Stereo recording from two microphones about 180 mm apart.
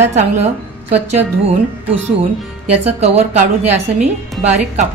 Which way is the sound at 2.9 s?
35° right (ahead or behind).